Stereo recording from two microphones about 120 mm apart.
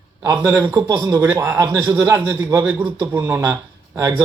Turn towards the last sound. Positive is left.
turn(degrees=-25)  # may be behind; listen again after turning